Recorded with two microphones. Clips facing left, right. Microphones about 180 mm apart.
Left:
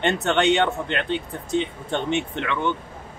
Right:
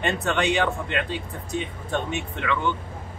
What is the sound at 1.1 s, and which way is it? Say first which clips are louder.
Speech: left 5 dB; 25° left (ahead or behind).